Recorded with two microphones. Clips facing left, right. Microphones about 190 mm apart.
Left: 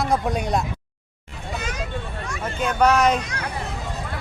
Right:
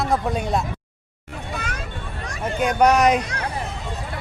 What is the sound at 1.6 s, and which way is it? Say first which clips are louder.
Vehicle: left 2 dB; 55° right (ahead or behind).